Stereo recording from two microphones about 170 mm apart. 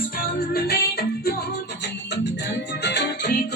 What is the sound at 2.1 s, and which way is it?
Music, 90° left.